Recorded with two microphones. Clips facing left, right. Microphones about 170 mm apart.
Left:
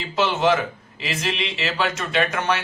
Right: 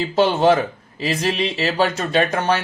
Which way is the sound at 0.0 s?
35° right (ahead or behind).